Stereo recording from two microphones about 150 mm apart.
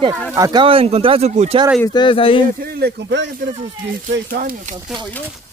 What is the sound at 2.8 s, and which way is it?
Speech, 90° right.